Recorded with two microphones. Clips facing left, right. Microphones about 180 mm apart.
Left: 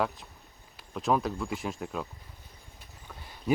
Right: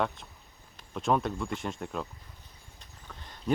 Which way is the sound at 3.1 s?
10° left (ahead or behind).